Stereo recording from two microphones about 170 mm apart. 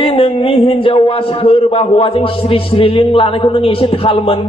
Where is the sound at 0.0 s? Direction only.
30° left (ahead or behind).